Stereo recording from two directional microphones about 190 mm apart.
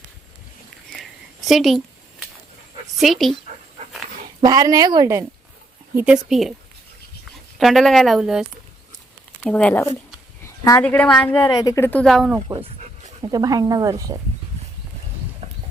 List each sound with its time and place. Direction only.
1.5 s a sound: centre (ahead or behind)
3.0 s speech: centre (ahead or behind)
4.4 s speech: 20° right (ahead or behind)
5.9 s speech: 10° right (ahead or behind)
7.6 s speech: centre (ahead or behind)
11.4 s speech: 15° left (ahead or behind); by 12.4 s centre (ahead or behind)
13.2 s speech: 20° right (ahead or behind)